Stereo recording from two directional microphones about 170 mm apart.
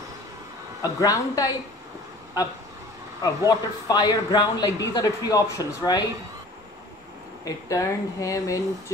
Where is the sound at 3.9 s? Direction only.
25° left (ahead or behind).